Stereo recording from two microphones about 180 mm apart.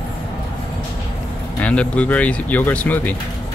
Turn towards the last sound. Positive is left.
turn(degrees=10)  # may be behind; listen again after turning